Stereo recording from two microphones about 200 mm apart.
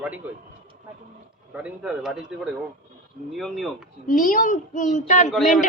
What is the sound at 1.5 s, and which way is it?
A man's voice, 5° right (ahead or behind).